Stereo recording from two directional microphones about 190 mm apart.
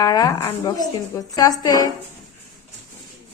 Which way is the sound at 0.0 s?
20° left (ahead or behind).